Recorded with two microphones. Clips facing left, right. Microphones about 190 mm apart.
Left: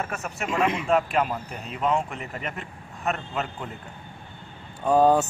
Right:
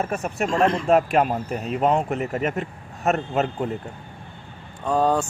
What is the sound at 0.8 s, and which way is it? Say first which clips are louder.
Speech: right 5 dB; 45° right (ahead or behind).